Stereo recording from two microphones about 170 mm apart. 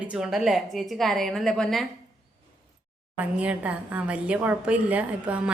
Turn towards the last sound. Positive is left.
turn(degrees=-10)  # may be behind; listen again after turning